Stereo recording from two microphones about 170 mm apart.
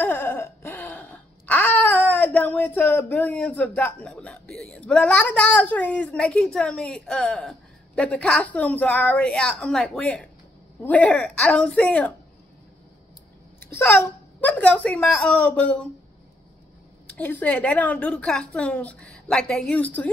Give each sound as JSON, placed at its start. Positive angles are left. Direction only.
{"t": 0.0, "sound": "a sound", "side_deg": 10}
{"t": 10.8, "sound": "a woman's voice", "side_deg": 10}
{"t": 13.7, "sound": "a woman's voice", "side_deg": 10}
{"t": 17.1, "sound": "a woman's voice", "side_deg": 10}